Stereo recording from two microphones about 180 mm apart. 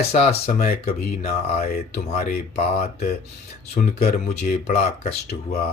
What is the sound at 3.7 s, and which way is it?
Speech, 35° left (ahead or behind).